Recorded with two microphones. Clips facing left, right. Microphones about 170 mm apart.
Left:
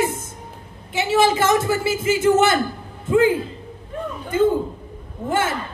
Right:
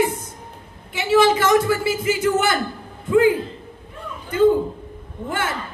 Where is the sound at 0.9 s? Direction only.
25° left (ahead or behind).